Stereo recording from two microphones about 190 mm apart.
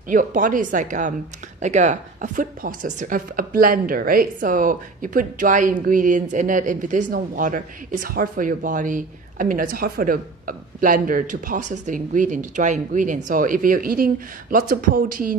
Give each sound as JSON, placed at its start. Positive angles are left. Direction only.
{"t": 0.1, "sound": "speech", "side_deg": -45}